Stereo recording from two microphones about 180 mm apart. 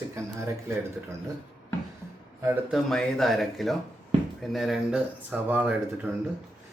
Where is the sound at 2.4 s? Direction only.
10° right (ahead or behind).